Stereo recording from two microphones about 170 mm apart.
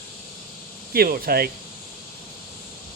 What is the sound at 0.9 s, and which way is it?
Speech, 60° right (ahead or behind).